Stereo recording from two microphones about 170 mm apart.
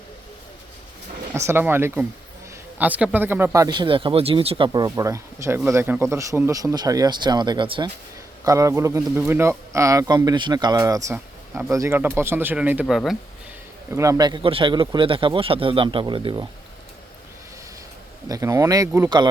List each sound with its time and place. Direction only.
1.3 s a man's voice: 15° right (ahead or behind)
13.9 s a man's voice: 20° right (ahead or behind)
18.3 s a man's voice: 20° right (ahead or behind)